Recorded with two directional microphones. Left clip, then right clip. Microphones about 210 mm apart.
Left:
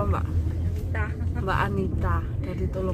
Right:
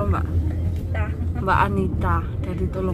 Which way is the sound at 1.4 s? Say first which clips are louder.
Right 7 dB; 15° right (ahead or behind).